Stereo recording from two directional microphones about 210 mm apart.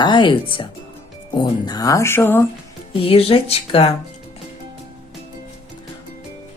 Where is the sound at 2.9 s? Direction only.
25° left (ahead or behind).